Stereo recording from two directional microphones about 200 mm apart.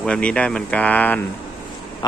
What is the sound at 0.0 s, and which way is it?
Speech, 5° left (ahead or behind).